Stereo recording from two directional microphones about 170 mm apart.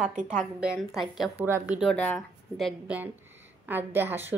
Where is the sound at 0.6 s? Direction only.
5° right (ahead or behind).